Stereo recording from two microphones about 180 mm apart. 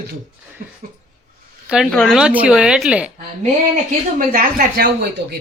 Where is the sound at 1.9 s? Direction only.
Centre (ahead or behind).